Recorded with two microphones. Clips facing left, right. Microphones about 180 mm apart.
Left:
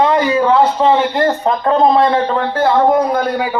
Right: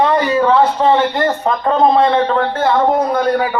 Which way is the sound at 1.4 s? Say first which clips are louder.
Even; 5° left (ahead or behind).